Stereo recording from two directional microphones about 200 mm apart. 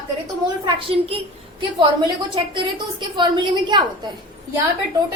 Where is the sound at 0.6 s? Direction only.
30° right (ahead or behind).